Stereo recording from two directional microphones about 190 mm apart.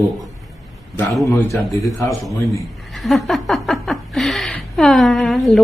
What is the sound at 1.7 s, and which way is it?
Speech, 15° left (ahead or behind).